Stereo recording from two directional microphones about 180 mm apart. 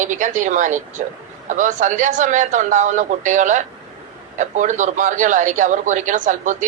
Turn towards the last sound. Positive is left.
turn(degrees=-45)  # may be behind; listen again after turning